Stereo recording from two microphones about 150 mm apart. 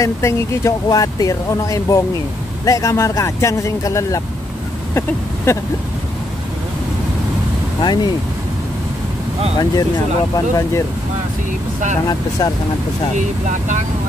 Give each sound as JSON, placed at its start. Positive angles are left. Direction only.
{"t": 0.0, "sound": "speech", "side_deg": 20}
{"t": 4.9, "sound": "a sound", "side_deg": 20}
{"t": 7.8, "sound": "speech", "side_deg": 30}
{"t": 9.6, "sound": "speech", "side_deg": 25}
{"t": 13.5, "sound": "speech", "side_deg": -55}